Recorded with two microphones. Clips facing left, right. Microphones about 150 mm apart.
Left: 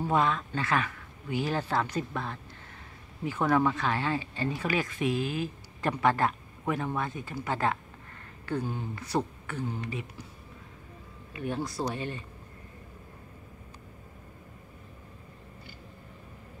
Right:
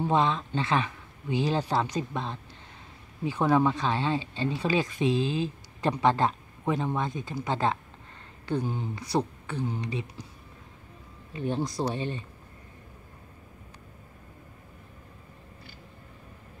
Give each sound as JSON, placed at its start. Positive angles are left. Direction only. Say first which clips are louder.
{"t": 0.0, "sound": "speech", "louder": "right 2 dB", "side_deg": -25}
{"t": 11.3, "sound": "speech", "louder": "right 3 dB", "side_deg": -25}